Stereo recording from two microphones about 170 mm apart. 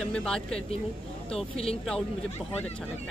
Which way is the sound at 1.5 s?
35° left (ahead or behind).